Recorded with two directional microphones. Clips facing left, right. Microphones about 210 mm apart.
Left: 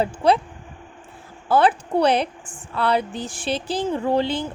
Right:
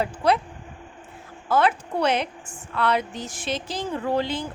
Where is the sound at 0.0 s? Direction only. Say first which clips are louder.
Left 3 dB; 30° left (ahead or behind).